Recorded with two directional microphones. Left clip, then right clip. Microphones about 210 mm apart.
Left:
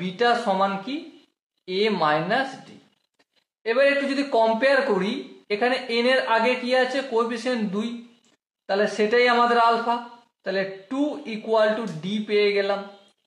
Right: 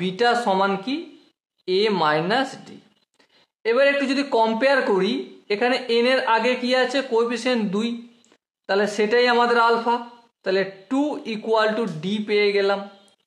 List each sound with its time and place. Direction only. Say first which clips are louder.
0.0 s speech: right 2 dB; 40° right (ahead or behind)
3.6 s a man's voice: right 2 dB; 45° right (ahead or behind)